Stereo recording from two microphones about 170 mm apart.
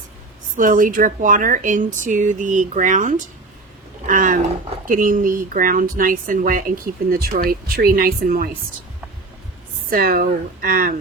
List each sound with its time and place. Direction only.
0.5 s speech: 50° right (ahead or behind)
9.9 s speech: 60° right (ahead or behind)